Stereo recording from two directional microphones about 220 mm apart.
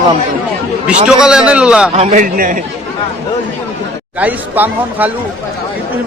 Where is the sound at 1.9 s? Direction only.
30° right (ahead or behind).